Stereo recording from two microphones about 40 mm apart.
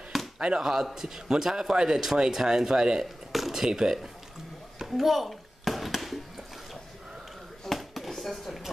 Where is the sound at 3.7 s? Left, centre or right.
Centre.